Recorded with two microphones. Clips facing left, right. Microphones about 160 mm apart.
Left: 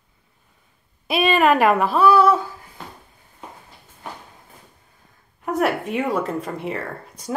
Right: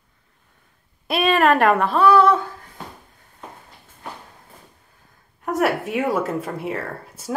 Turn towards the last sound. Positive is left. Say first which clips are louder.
# right 1 dB
turn(degrees=-5)  # may be behind; listen again after turning